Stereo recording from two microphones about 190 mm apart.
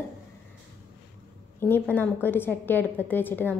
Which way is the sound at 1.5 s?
10° left (ahead or behind).